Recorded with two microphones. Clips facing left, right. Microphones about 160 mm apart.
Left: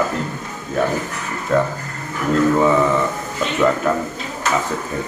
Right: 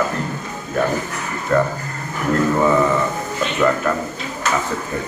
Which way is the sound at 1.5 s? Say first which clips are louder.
Even; 5° left (ahead or behind).